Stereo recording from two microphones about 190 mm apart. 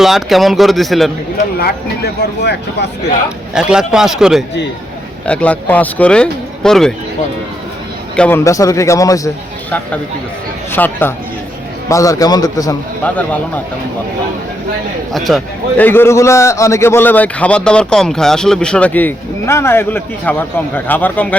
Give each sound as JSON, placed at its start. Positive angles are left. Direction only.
{"t": 0.0, "sound": "speech", "side_deg": 0}
{"t": 3.5, "sound": "a man's voice", "side_deg": -5}
{"t": 8.1, "sound": "a man's voice", "side_deg": 5}
{"t": 8.4, "sound": "a man's voice", "side_deg": 15}
{"t": 10.7, "sound": "a man's voice", "side_deg": 10}
{"t": 13.1, "sound": "a man's voice", "side_deg": 10}
{"t": 15.1, "sound": "speech", "side_deg": 0}
{"t": 15.8, "sound": "a man's voice", "side_deg": 10}